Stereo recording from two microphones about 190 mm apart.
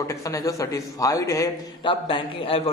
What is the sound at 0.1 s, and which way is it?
A man's voice, 15° left (ahead or behind).